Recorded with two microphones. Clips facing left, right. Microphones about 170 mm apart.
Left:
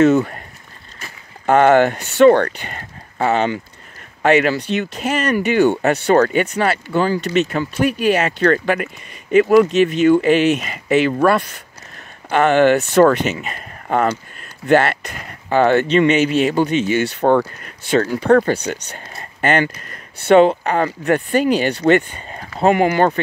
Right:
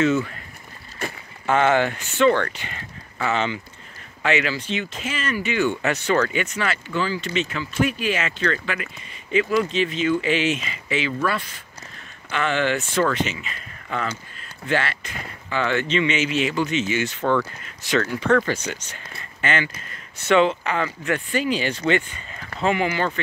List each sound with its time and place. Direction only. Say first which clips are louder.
0.0 s speech: left 7 dB; 40° left (ahead or behind)
1.4 s speech: left 7 dB; 45° left (ahead or behind)
5.9 s speech: left 7 dB; 40° left (ahead or behind)
6.7 s speech: left 7 dB; 50° left (ahead or behind)
10.0 s speech: left 9 dB; 45° left (ahead or behind)
17.9 s speech: left 6 dB; 35° left (ahead or behind)